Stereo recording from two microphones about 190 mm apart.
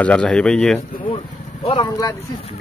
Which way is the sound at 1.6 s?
25° left (ahead or behind).